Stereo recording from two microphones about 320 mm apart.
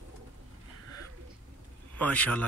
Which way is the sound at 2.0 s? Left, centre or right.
Centre.